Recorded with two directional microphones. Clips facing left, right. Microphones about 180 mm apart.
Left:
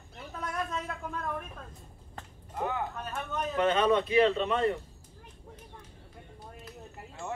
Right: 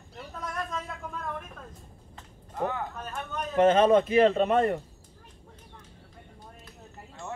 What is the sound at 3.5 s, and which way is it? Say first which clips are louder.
A man's voice: right 6 dB; 45° right (ahead or behind).